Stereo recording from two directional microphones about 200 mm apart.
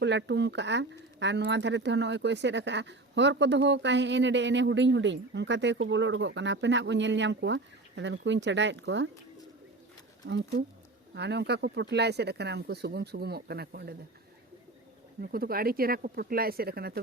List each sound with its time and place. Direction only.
0.0 s speech: 65° right (ahead or behind)
11.1 s speech: 60° right (ahead or behind)
15.2 s speech: 50° right (ahead or behind)